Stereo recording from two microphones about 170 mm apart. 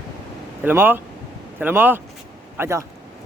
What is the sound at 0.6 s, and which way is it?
A man's voice, 10° right (ahead or behind).